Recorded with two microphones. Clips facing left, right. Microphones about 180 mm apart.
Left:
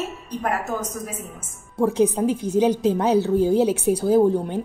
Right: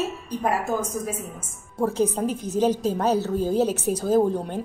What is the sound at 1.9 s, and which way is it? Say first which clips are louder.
A woman's voice: left 4 dB; 10° left (ahead or behind).